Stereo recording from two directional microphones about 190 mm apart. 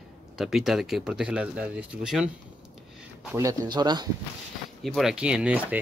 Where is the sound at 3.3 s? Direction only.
20° right (ahead or behind).